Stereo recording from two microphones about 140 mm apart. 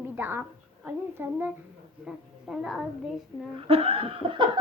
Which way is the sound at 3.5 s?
45° right (ahead or behind).